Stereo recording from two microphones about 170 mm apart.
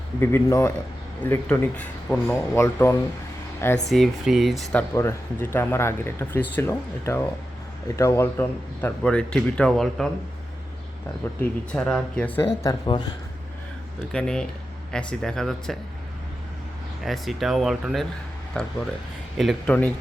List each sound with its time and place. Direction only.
0.2 s speech: 15° left (ahead or behind)
3.8 s speech: centre (ahead or behind)
11.3 s speech: 5° left (ahead or behind)
12.6 s speech: 25° left (ahead or behind)
14.1 s speech: 5° left (ahead or behind)
17.0 s speech: centre (ahead or behind)